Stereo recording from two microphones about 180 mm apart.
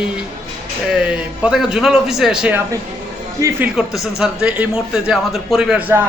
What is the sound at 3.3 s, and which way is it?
Speech, 15° right (ahead or behind).